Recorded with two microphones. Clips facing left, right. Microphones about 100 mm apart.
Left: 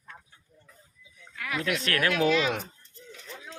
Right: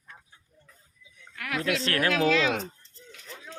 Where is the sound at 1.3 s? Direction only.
70° right (ahead or behind).